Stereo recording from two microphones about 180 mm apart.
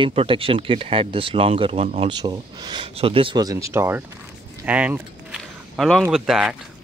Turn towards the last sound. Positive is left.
turn(degrees=-5)  # may be behind; listen again after turning